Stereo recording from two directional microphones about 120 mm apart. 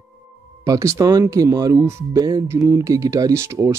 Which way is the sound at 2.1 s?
30° right (ahead or behind).